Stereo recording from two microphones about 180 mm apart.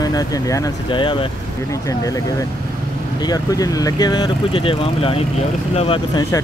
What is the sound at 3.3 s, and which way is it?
Speech, 20° left (ahead or behind).